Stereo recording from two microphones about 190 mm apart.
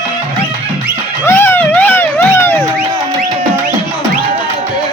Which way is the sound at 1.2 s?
10° left (ahead or behind).